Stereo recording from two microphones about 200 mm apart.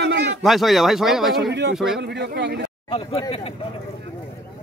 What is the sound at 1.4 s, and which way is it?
Speech, 60° right (ahead or behind).